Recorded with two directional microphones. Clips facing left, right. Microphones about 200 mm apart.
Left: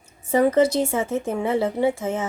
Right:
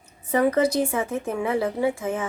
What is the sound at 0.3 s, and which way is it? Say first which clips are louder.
Speech: left 3 dB; 25° left (ahead or behind).